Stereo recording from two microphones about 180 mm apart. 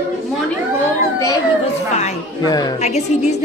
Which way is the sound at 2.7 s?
40° left (ahead or behind).